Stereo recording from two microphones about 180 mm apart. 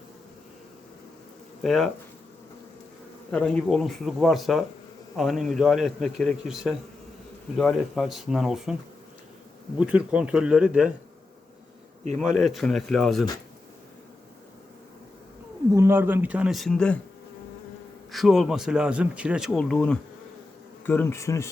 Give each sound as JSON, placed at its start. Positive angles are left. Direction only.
{"t": 1.6, "sound": "speech", "side_deg": 0}
{"t": 3.3, "sound": "speech", "side_deg": 5}
{"t": 9.7, "sound": "speech", "side_deg": -5}
{"t": 12.1, "sound": "speech", "side_deg": 0}
{"t": 15.7, "sound": "speech", "side_deg": -15}
{"t": 18.1, "sound": "speech", "side_deg": 0}
{"t": 20.8, "sound": "bee", "side_deg": 15}